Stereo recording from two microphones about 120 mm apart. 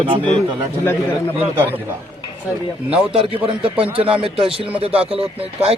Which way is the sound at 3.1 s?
50° right (ahead or behind).